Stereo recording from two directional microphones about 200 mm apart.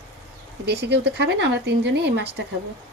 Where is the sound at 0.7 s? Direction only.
55° right (ahead or behind).